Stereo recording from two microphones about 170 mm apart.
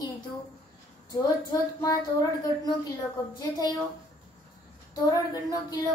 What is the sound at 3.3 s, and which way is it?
Speech, 25° left (ahead or behind).